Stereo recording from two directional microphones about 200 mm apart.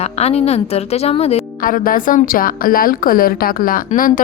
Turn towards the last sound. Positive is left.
turn(degrees=45)  # may be behind; listen again after turning